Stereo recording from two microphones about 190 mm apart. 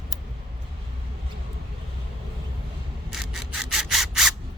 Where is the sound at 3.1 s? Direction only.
Centre (ahead or behind).